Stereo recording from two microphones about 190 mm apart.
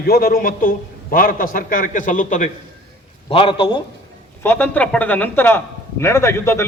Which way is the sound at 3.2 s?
30° left (ahead or behind).